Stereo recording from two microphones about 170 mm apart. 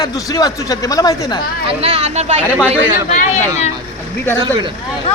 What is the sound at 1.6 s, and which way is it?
Speech, 40° right (ahead or behind).